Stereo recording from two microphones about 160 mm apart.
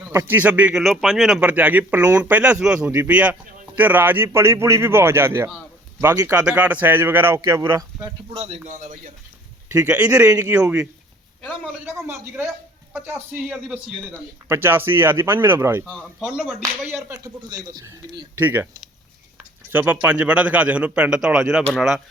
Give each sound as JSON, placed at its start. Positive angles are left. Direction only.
{"t": 0.1, "sound": "speech", "side_deg": -15}
{"t": 8.3, "sound": "a man's voice", "side_deg": -40}
{"t": 8.6, "sound": "a man's voice", "side_deg": -50}
{"t": 9.7, "sound": "speech", "side_deg": -10}
{"t": 11.9, "sound": "speech", "side_deg": -15}
{"t": 15.8, "sound": "speech", "side_deg": 5}
{"t": 16.9, "sound": "speech", "side_deg": -20}
{"t": 18.3, "sound": "speech", "side_deg": -10}